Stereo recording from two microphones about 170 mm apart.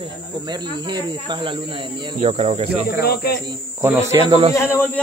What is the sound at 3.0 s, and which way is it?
Speech, 65° left (ahead or behind).